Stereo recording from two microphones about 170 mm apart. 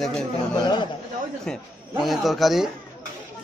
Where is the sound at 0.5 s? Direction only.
25° left (ahead or behind).